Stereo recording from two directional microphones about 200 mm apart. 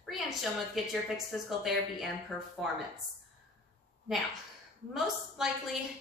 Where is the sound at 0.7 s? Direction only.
Centre (ahead or behind).